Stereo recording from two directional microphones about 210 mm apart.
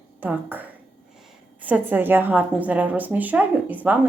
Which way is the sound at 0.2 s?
10° right (ahead or behind).